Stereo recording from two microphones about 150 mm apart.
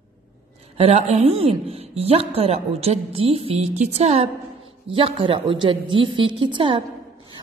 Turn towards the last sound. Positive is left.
turn(degrees=-35)  # may be behind; listen again after turning